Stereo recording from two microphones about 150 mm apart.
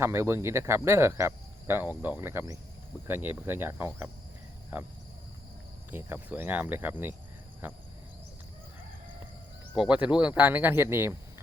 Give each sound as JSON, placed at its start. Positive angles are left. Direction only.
{"t": 0.0, "sound": "cricket", "side_deg": -15}
{"t": 5.9, "sound": "cricket", "side_deg": -15}
{"t": 9.7, "sound": "cricket", "side_deg": -5}